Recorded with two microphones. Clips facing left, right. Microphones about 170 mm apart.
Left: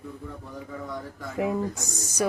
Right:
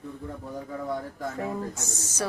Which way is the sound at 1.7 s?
35° left (ahead or behind).